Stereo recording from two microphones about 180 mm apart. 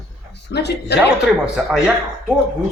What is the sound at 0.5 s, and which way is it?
Speech, 65° left (ahead or behind).